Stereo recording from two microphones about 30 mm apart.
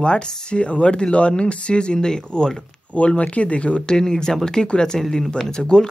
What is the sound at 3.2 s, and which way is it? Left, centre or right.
Speech, left.